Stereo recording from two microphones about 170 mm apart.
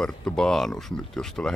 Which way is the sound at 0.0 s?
5° left (ahead or behind).